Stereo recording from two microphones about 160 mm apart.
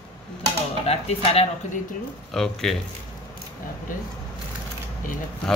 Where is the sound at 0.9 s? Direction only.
40° left (ahead or behind).